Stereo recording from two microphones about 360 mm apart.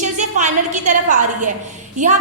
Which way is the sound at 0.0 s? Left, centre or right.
Centre.